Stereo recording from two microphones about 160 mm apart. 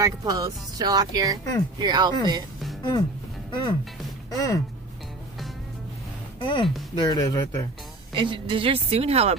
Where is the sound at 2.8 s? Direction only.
25° left (ahead or behind).